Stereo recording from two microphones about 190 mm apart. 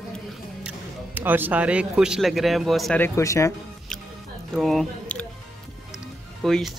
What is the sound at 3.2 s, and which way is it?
Speech, 15° left (ahead or behind).